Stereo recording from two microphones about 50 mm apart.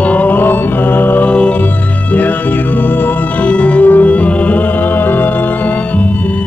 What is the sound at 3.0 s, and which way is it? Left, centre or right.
Music, left.